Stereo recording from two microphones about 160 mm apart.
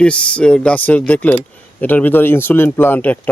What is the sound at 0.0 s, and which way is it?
Speech, 5° left (ahead or behind).